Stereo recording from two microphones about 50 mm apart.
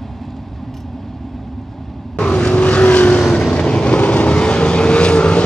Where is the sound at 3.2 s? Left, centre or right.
Centre.